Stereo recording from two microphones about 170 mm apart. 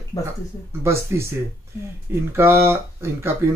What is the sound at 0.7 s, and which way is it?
Speech, 15° right (ahead or behind).